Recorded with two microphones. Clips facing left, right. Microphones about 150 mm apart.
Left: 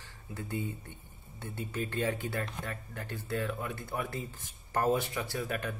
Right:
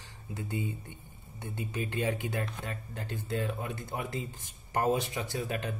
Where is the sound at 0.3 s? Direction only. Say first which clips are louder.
Right 1 dB; 20° right (ahead or behind).